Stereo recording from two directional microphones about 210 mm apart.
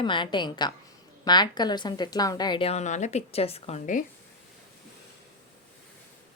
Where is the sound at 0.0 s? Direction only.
20° left (ahead or behind).